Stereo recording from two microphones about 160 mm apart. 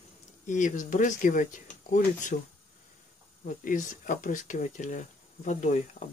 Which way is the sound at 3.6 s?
55° left (ahead or behind).